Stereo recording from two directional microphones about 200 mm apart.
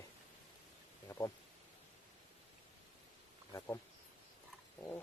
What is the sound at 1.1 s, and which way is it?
Speech, 15° left (ahead or behind).